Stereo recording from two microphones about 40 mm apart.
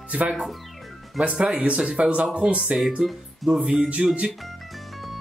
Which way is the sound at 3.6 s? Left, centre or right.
Right.